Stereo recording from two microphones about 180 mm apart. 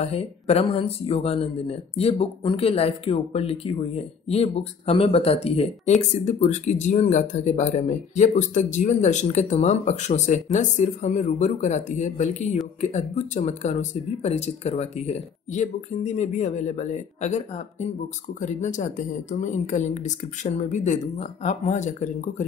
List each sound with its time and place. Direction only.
0.0 s speech: 35° left (ahead or behind)